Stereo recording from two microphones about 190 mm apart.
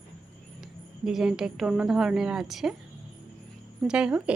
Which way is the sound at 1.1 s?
Centre (ahead or behind).